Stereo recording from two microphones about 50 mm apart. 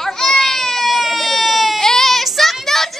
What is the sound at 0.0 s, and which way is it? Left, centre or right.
Baby cry, centre.